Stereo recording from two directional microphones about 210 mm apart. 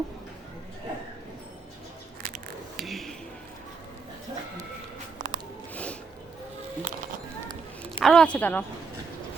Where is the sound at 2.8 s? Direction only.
Centre (ahead or behind).